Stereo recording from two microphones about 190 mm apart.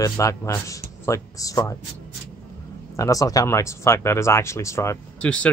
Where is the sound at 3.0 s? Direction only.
20° left (ahead or behind).